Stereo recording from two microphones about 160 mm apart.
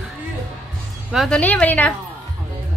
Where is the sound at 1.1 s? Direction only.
5° left (ahead or behind).